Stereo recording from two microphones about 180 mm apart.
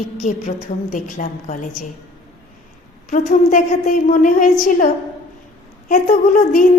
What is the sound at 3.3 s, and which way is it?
A woman's voice, 45° left (ahead or behind).